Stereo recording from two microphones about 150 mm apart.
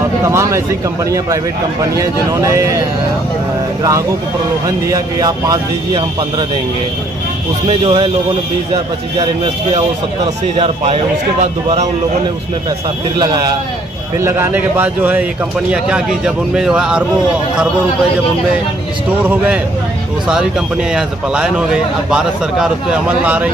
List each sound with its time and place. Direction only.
0.2 s speech: 20° right (ahead or behind)
2.0 s speech: 20° right (ahead or behind)
4.6 s speech: 25° right (ahead or behind)
7.6 s a man's voice: 35° right (ahead or behind)
9.2 s a man's voice: 35° right (ahead or behind)
13.2 s speech: 25° right (ahead or behind)
14.1 s a man's voice: 15° right (ahead or behind)
19.2 s a man's voice: 10° right (ahead or behind)
20.9 s a man's voice: 5° right (ahead or behind)